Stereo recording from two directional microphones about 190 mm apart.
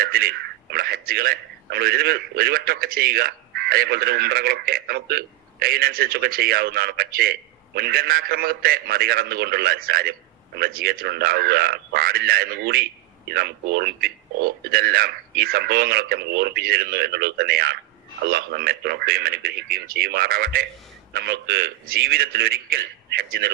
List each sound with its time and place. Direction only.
0.0 s a man's voice: 50° right (ahead or behind)